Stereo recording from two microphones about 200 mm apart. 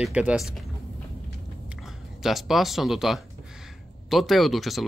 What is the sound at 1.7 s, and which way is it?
Speech, centre (ahead or behind).